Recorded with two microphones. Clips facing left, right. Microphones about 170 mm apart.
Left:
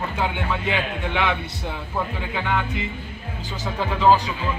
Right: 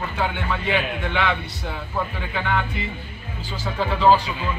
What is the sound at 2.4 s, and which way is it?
Speech, 15° left (ahead or behind).